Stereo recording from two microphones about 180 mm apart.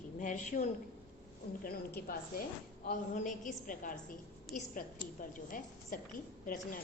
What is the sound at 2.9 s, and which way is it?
A woman's voice, 45° left (ahead or behind).